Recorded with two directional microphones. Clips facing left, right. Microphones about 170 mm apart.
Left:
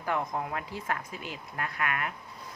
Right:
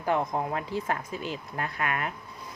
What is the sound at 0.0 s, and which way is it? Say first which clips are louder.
A woman's voice: right 4 dB; 25° right (ahead or behind).